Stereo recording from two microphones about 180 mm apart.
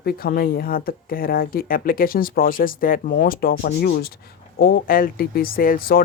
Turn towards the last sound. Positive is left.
turn(degrees=55)  # may be behind; listen again after turning